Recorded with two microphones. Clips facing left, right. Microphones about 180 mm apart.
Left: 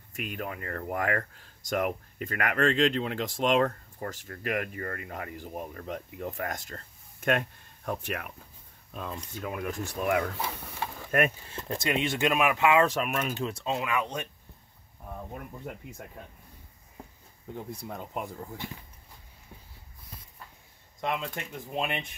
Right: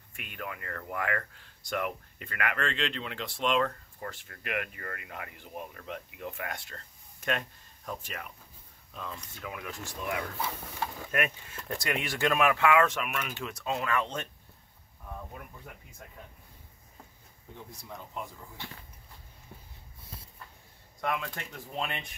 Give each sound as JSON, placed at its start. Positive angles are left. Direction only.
{"t": 0.1, "sound": "speech", "side_deg": 40}
{"t": 8.9, "sound": "speech", "side_deg": 50}
{"t": 11.1, "sound": "speech", "side_deg": 40}
{"t": 12.8, "sound": "speech", "side_deg": 40}
{"t": 13.7, "sound": "speech", "side_deg": 15}
{"t": 17.6, "sound": "speech", "side_deg": 55}
{"t": 21.0, "sound": "speech", "side_deg": 20}